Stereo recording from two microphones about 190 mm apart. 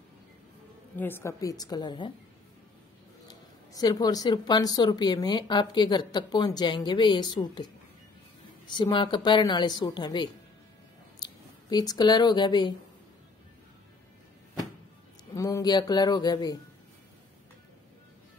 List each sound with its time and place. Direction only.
0.9 s speech: 10° left (ahead or behind)
3.3 s speech: 20° left (ahead or behind)
15.3 s speech: 15° left (ahead or behind)